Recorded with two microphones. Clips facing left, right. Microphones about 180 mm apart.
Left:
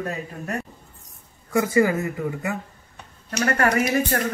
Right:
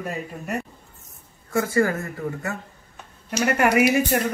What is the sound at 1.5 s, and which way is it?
Speech, 10° left (ahead or behind).